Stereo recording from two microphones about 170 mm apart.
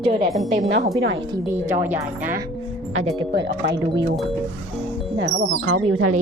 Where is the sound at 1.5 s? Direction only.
15° right (ahead or behind).